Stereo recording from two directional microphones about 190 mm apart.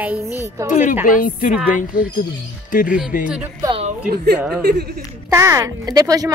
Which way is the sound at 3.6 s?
25° right (ahead or behind).